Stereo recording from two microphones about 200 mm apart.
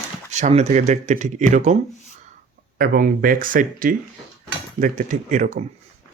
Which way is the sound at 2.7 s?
45° right (ahead or behind).